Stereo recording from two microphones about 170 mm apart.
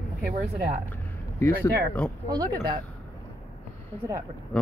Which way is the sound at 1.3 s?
15° left (ahead or behind).